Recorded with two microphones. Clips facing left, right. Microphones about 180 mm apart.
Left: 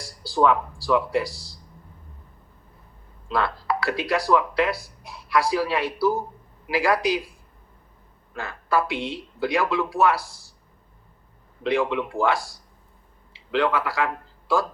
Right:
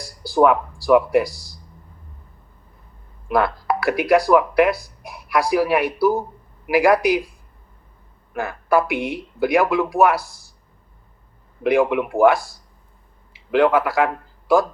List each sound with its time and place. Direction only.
0.3 s speech: 20° right (ahead or behind)
3.2 s speech: 15° right (ahead or behind)
8.3 s speech: 15° right (ahead or behind)
11.6 s speech: 15° right (ahead or behind)
13.5 s a man's voice: 20° right (ahead or behind)